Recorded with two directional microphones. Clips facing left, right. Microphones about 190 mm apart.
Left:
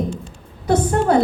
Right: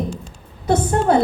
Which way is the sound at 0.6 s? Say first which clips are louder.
Even; 25° right (ahead or behind).